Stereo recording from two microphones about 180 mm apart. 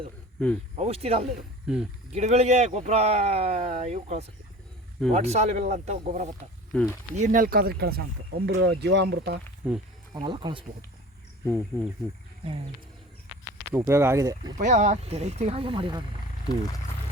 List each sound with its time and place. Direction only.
0.3 s speech: 5° left (ahead or behind)
0.8 s speech: 35° right (ahead or behind)
1.6 s speech: centre (ahead or behind)
2.1 s speech: 35° right (ahead or behind)
6.7 s speech: 5° left (ahead or behind)
7.2 s speech: 50° right (ahead or behind)
8.4 s speech: 70° right (ahead or behind)
9.6 s speech: 10° right (ahead or behind)
10.2 s speech: 25° right (ahead or behind)
11.4 s speech: 10° left (ahead or behind)
13.7 s speech: 15° right (ahead or behind)
14.6 s speech: 40° right (ahead or behind)